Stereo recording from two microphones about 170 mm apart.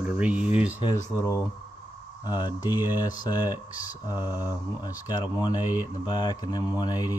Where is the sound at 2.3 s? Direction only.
25° left (ahead or behind).